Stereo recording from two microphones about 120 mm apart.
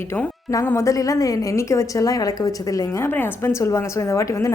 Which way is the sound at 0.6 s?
25° left (ahead or behind).